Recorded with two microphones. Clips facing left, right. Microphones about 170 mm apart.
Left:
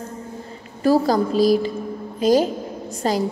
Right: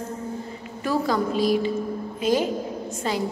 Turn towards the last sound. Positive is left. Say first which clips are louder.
# left 4 dB
turn(degrees=40)  # may be behind; listen again after turning